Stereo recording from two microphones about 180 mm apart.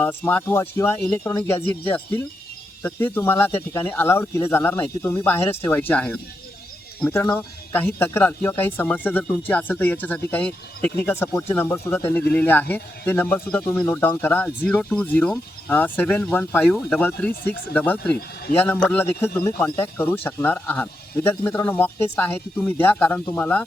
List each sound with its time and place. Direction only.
0.0 s speech: 10° left (ahead or behind)